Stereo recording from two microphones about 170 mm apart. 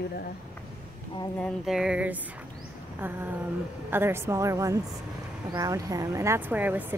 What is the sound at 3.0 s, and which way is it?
Speech, 10° right (ahead or behind).